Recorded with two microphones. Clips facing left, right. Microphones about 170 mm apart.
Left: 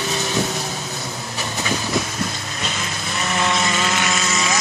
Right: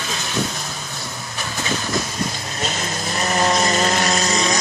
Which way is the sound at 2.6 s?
40° right (ahead or behind).